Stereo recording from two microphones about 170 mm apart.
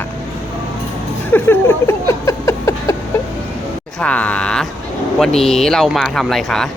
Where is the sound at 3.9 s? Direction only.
5° left (ahead or behind).